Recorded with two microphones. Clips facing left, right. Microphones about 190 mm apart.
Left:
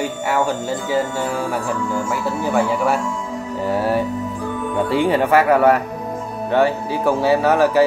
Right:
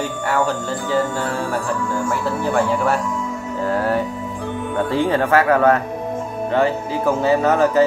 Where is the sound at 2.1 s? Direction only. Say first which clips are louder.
Right 1 dB; 5° left (ahead or behind).